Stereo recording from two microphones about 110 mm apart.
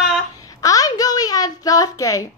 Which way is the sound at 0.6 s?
30° left (ahead or behind).